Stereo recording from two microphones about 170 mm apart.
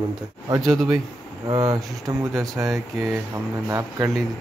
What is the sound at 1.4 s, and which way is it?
Speech, 20° right (ahead or behind).